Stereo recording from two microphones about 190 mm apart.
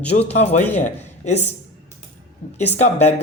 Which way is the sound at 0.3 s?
35° left (ahead or behind).